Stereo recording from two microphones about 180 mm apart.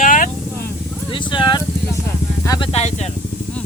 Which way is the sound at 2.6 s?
35° left (ahead or behind).